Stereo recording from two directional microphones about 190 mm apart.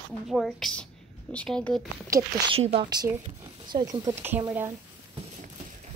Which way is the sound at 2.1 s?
20° right (ahead or behind).